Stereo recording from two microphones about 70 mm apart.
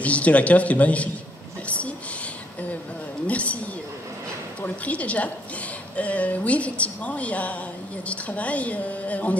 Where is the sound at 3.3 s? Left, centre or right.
Centre.